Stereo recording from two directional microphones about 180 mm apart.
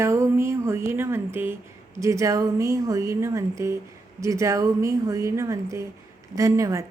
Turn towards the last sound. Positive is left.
turn(degrees=-20)  # may be behind; listen again after turning